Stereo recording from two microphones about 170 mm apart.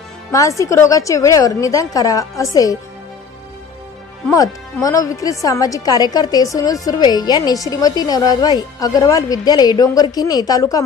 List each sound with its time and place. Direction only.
0.3 s a woman's voice: 20° left (ahead or behind)
4.3 s a woman's voice: 20° left (ahead or behind)